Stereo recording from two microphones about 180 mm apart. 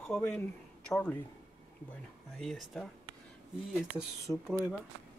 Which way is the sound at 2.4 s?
Centre (ahead or behind).